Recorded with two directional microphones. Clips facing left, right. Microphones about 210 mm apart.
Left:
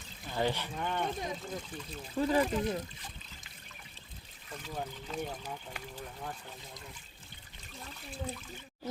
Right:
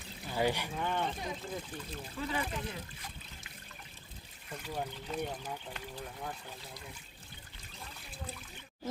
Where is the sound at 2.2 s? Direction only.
40° left (ahead or behind).